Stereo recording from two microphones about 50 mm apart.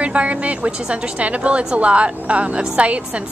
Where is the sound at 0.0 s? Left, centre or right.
Right.